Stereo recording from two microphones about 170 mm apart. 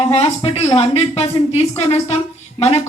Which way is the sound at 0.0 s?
35° left (ahead or behind).